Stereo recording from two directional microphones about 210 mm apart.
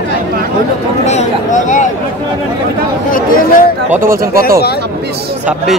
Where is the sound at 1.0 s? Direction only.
35° left (ahead or behind).